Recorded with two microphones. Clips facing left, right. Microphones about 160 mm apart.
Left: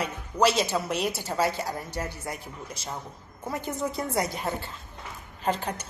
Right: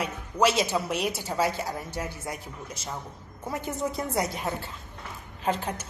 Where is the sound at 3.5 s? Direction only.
5° right (ahead or behind).